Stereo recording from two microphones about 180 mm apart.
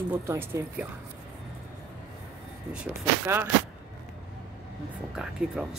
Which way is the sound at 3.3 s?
15° right (ahead or behind).